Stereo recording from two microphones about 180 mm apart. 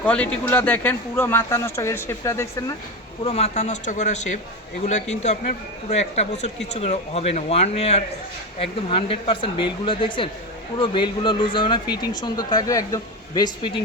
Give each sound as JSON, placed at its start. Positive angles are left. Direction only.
{"t": 0.0, "sound": "speech", "side_deg": 5}
{"t": 3.2, "sound": "a man's voice", "side_deg": 35}